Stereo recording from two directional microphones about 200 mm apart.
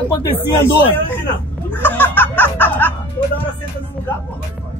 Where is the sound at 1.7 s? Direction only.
10° left (ahead or behind).